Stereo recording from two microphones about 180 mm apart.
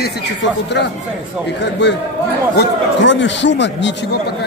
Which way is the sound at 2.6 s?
90° left.